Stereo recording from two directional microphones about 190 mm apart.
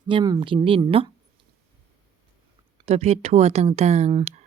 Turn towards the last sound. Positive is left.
turn(degrees=-35)  # may be behind; listen again after turning